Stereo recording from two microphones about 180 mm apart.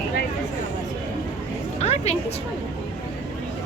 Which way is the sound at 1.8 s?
35° left (ahead or behind).